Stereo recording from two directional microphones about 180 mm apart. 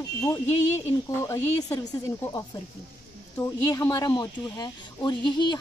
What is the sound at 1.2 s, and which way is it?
Speech, 20° left (ahead or behind).